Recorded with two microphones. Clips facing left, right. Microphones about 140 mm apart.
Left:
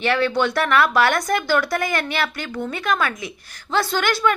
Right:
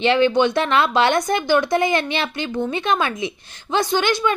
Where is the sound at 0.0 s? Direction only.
20° right (ahead or behind).